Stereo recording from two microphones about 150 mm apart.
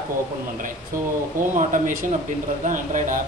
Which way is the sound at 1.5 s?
60° right (ahead or behind).